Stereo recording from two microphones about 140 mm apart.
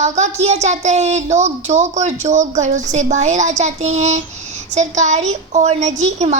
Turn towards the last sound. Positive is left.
turn(degrees=-55)  # may be behind; listen again after turning